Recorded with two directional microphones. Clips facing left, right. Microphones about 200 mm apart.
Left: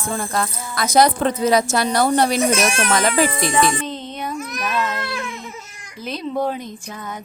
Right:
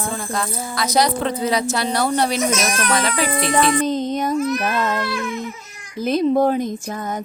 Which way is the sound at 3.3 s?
35° right (ahead or behind).